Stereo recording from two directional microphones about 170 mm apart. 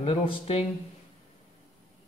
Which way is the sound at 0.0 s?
35° left (ahead or behind).